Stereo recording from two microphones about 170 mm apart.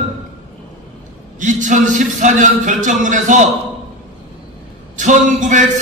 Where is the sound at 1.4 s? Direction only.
45° right (ahead or behind).